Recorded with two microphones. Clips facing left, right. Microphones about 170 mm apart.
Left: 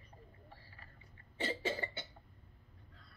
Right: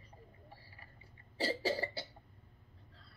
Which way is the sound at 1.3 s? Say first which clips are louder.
Right 3 dB; 35° right (ahead or behind).